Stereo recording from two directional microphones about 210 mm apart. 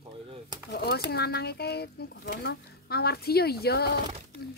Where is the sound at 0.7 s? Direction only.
50° left (ahead or behind).